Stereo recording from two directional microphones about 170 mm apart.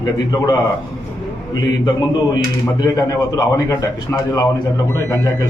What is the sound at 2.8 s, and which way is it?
A man's voice, 20° left (ahead or behind).